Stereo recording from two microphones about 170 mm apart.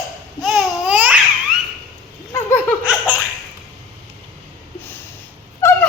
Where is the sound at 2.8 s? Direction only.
10° right (ahead or behind).